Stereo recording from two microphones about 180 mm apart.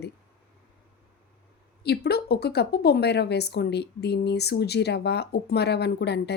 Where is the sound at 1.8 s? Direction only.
65° left (ahead or behind).